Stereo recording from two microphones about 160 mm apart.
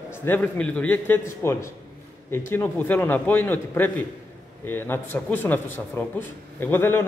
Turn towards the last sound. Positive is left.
turn(degrees=15)  # may be behind; listen again after turning